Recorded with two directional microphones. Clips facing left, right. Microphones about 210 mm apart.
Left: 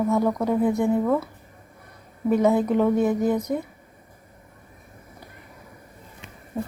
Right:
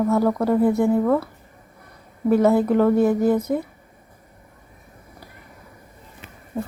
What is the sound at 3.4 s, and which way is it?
Speech, 5° right (ahead or behind).